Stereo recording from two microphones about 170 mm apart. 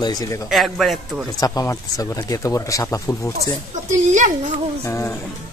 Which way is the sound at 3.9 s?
45° right (ahead or behind).